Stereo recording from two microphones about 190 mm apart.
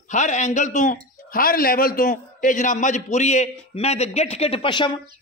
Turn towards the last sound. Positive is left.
turn(degrees=25)  # may be behind; listen again after turning